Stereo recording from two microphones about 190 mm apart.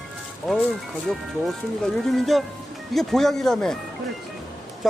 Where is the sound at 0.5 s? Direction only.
Centre (ahead or behind).